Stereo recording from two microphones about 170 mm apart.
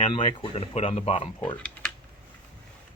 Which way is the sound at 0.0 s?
30° left (ahead or behind).